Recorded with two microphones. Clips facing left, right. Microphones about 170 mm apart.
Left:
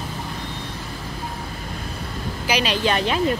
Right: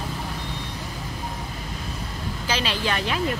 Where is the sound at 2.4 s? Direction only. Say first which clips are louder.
Left 5 dB; 15° left (ahead or behind).